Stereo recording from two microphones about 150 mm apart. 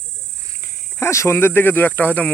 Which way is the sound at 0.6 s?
20° left (ahead or behind).